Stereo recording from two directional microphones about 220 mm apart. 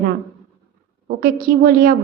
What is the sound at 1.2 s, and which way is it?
Speech, 40° right (ahead or behind).